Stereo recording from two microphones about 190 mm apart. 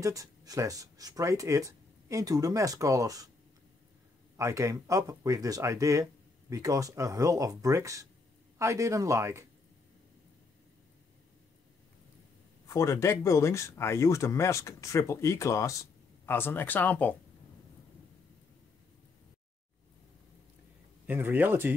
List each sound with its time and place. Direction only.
0.0 s speech: 15° right (ahead or behind)
4.4 s speech: 15° right (ahead or behind)
12.6 s speech: 15° left (ahead or behind)
21.1 s speech: 10° right (ahead or behind)